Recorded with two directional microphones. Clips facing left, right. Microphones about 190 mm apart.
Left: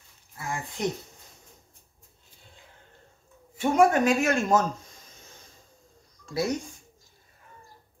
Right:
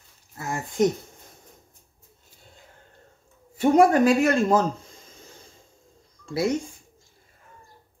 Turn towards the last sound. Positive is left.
turn(degrees=-30)  # may be behind; listen again after turning